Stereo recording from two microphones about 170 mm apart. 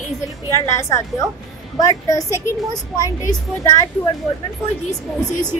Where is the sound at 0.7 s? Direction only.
15° left (ahead or behind).